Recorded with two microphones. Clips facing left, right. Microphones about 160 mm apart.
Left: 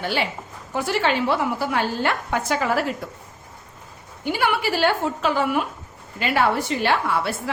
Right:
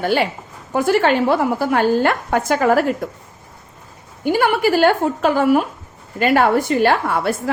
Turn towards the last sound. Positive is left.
turn(degrees=-45)  # may be behind; listen again after turning